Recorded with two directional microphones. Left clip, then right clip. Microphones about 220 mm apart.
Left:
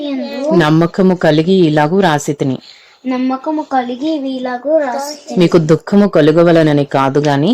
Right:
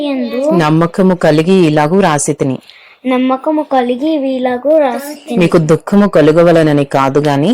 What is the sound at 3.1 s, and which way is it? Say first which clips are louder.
Speech: right 5 dB; 25° right (ahead or behind).